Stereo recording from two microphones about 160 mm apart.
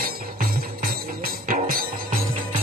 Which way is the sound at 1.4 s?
60° right (ahead or behind).